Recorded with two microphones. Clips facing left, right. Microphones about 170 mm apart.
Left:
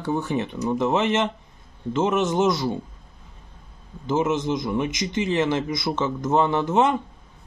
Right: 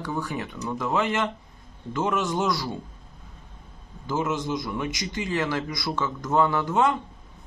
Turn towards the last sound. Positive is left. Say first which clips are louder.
# left 3 dB
turn(degrees=20)  # may be behind; listen again after turning